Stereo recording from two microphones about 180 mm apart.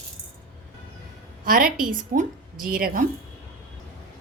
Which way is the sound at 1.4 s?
50° right (ahead or behind).